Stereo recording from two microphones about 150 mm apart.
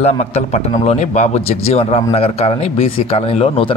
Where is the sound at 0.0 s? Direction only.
45° left (ahead or behind).